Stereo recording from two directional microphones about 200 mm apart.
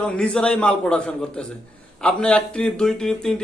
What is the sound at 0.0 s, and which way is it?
Speech, 5° left (ahead or behind).